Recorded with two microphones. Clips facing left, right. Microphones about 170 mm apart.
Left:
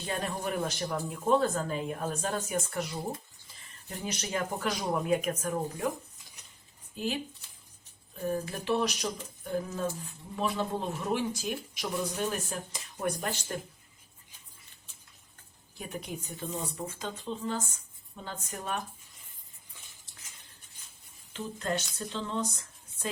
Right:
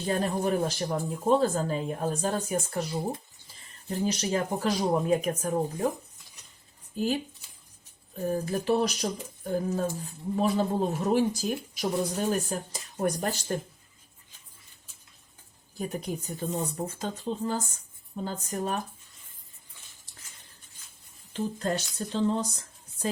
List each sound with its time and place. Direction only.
0.0 s speech: 35° right (ahead or behind)
6.9 s speech: 40° right (ahead or behind)
8.2 s speech: 40° right (ahead or behind)
15.8 s speech: 40° right (ahead or behind)
21.9 s speech: 35° right (ahead or behind)